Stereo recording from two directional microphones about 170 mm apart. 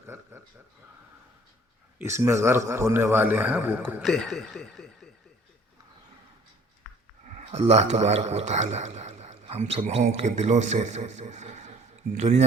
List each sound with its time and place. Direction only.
0.1 s a sound: 15° right (ahead or behind)
2.0 s a man's voice: 15° right (ahead or behind)
4.1 s speech: centre (ahead or behind)
7.3 s a man's voice: 40° right (ahead or behind)